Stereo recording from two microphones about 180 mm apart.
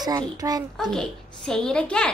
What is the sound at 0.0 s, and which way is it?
Speech, 20° right (ahead or behind).